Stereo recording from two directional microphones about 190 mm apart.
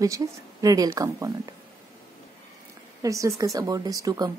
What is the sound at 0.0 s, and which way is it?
Speech, 20° right (ahead or behind).